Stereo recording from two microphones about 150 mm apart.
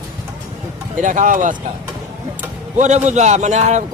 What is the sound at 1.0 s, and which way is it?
Speech, 60° right (ahead or behind).